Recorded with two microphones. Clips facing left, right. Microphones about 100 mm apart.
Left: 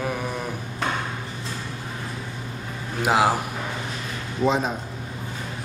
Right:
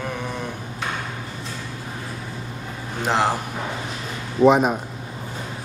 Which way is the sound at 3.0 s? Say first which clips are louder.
Left 1 dB; 5° left (ahead or behind).